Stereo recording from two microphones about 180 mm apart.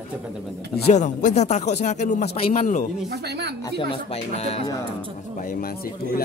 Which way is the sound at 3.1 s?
65° right (ahead or behind).